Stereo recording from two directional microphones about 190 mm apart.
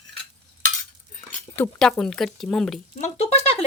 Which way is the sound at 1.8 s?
5° left (ahead or behind).